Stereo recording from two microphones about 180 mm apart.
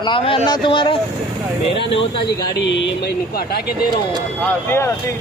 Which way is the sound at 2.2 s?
80° left.